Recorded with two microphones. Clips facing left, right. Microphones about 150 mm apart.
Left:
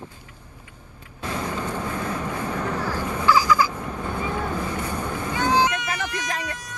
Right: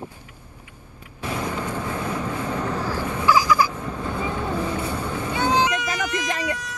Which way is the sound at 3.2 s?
15° right (ahead or behind).